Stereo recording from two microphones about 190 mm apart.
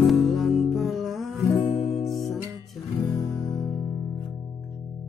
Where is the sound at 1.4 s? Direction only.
15° left (ahead or behind).